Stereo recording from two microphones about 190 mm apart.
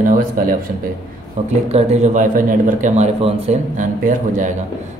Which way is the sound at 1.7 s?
35° right (ahead or behind).